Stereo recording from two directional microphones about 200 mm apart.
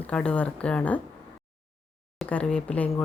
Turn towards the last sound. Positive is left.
turn(degrees=5)  # may be behind; listen again after turning